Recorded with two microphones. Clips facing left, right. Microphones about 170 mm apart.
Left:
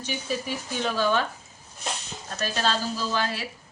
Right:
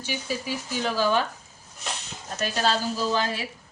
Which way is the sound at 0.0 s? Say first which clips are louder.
Left 1 dB; 10° right (ahead or behind).